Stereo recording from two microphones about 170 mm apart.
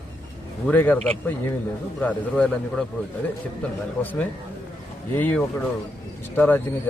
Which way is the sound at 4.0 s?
10° left (ahead or behind).